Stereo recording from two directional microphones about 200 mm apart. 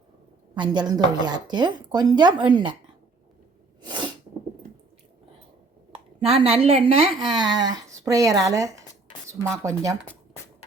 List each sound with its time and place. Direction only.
0.5 s a woman's voice: 20° right (ahead or behind)
3.8 s sneeze: 25° right (ahead or behind)
5.9 s a woman's voice: 30° right (ahead or behind)